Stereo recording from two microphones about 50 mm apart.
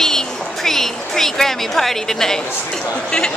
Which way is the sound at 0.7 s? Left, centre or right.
Centre.